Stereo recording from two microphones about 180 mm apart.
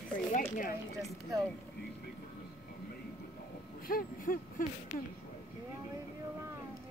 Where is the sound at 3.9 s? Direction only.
50° left (ahead or behind).